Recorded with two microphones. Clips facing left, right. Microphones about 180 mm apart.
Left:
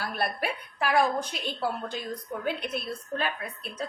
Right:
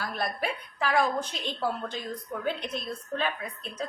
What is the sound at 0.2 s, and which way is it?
A woman's voice, 10° left (ahead or behind).